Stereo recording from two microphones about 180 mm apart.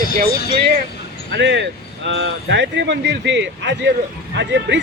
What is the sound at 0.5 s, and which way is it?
Speech, 65° right (ahead or behind).